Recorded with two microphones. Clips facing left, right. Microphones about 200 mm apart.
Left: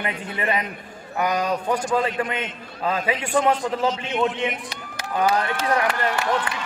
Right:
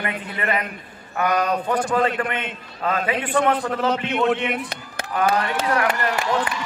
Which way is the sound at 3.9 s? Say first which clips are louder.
Right 3 dB; 60° right (ahead or behind).